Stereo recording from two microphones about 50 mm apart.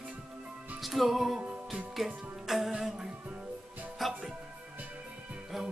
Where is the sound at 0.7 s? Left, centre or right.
Centre.